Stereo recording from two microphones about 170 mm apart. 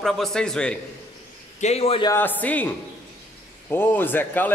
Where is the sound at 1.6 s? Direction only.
35° left (ahead or behind).